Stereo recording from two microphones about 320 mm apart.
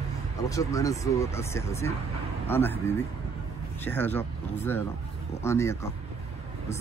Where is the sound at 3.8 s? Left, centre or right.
Centre.